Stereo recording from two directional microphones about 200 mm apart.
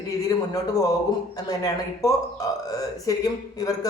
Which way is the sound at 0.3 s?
20° left (ahead or behind).